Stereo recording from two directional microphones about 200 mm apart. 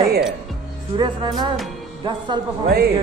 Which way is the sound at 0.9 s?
20° right (ahead or behind).